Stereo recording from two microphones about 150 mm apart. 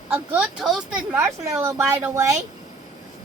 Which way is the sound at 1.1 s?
15° right (ahead or behind).